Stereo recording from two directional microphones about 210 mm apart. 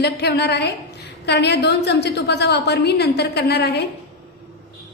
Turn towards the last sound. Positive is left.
turn(degrees=50)  # may be behind; listen again after turning